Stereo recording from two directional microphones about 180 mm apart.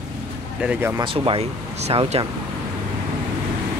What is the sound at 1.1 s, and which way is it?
Speech, 30° right (ahead or behind).